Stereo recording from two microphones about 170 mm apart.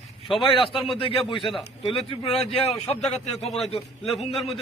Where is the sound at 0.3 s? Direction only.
30° left (ahead or behind).